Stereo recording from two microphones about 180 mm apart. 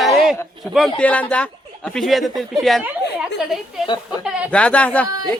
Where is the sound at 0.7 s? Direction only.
15° left (ahead or behind); by 4.5 s 5° right (ahead or behind).